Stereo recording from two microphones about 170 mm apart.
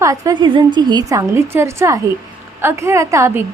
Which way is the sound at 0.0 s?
20° right (ahead or behind).